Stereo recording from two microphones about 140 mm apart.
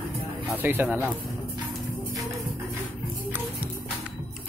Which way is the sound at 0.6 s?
15° right (ahead or behind).